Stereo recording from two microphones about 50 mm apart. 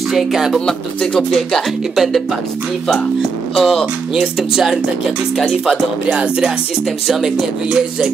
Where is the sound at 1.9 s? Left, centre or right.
Centre.